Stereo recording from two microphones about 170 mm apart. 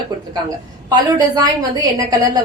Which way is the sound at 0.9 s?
20° right (ahead or behind).